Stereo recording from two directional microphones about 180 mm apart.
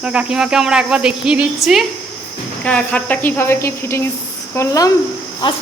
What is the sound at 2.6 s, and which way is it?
A woman's voice, 5° left (ahead or behind).